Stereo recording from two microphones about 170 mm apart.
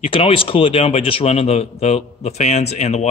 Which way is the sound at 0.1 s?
30° left (ahead or behind).